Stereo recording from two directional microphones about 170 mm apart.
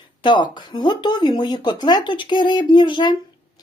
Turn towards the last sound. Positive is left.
turn(degrees=25)  # may be behind; listen again after turning